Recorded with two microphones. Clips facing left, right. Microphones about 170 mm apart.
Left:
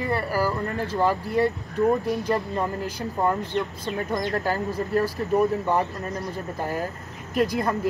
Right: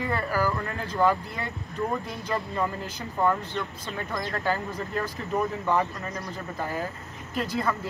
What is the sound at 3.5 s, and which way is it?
Speech, 15° left (ahead or behind).